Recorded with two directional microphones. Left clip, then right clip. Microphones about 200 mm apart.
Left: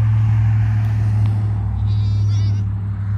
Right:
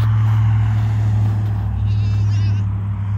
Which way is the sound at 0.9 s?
Centre (ahead or behind).